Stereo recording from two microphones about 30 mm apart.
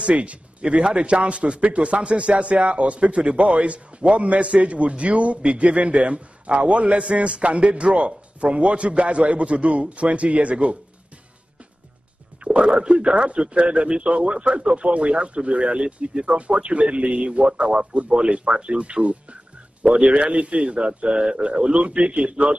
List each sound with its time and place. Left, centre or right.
0.0 s a man's voice: right
1.6 s a man's voice: right
12.5 s a man's voice: right
15.0 s a man's voice: right